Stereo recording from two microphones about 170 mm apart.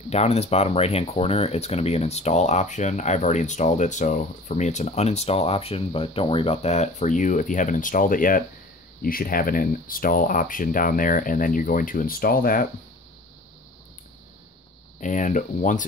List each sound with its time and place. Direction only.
0.1 s speech: 40° left (ahead or behind); by 12.6 s 55° left (ahead or behind)
15.0 s speech: 50° left (ahead or behind)